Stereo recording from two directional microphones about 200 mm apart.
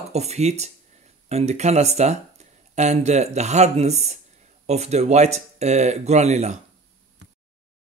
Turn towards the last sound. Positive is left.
turn(degrees=-35)  # may be behind; listen again after turning